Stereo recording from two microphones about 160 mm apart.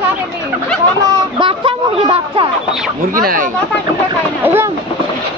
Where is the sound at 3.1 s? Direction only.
60° right (ahead or behind).